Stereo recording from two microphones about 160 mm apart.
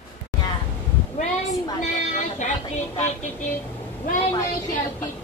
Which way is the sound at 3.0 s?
45° left (ahead or behind).